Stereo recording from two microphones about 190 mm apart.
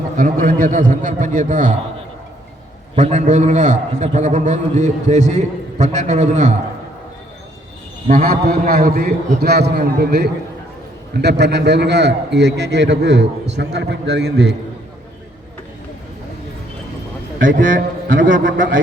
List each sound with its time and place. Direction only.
0.2 s a man's voice: 45° right (ahead or behind)
2.9 s a man's voice: 35° right (ahead or behind)
8.0 s a man's voice: 50° right (ahead or behind)
17.6 s a man's voice: 45° right (ahead or behind)